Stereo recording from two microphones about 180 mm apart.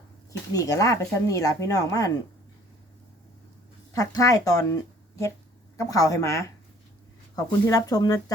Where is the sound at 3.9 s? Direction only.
20° left (ahead or behind).